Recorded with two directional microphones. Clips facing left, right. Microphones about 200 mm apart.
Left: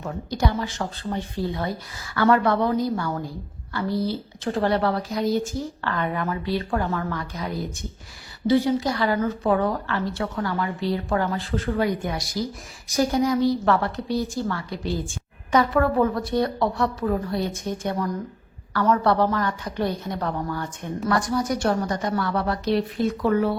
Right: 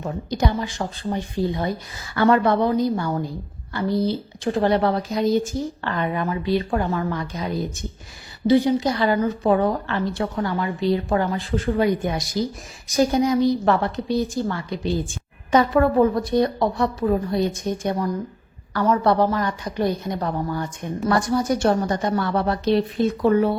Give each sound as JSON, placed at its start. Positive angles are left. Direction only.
{"t": 0.0, "sound": "a woman's voice", "side_deg": -20}
{"t": 21.1, "sound": "a woman's voice", "side_deg": -25}